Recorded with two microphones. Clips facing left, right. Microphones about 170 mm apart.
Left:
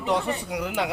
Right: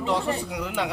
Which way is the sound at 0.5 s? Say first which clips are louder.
Left 1 dB; 10° left (ahead or behind).